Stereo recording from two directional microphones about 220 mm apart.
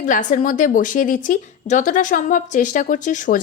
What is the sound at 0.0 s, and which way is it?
A woman's voice, 35° left (ahead or behind).